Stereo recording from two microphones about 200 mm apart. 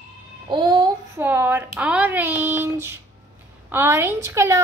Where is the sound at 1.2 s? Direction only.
10° right (ahead or behind).